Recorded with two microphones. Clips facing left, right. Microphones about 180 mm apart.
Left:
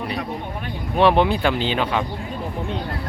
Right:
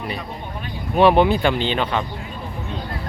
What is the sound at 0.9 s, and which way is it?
Speech, 5° right (ahead or behind).